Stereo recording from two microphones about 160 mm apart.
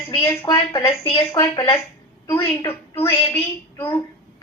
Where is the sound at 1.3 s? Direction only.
20° left (ahead or behind).